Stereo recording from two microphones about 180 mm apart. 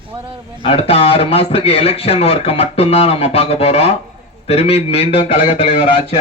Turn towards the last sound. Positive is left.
turn(degrees=30)  # may be behind; listen again after turning